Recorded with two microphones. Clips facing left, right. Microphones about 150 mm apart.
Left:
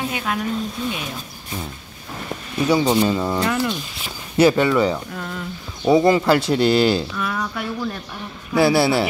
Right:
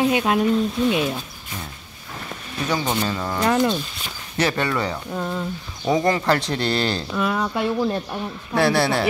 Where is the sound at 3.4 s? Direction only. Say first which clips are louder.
Right 3 dB; 20° right (ahead or behind).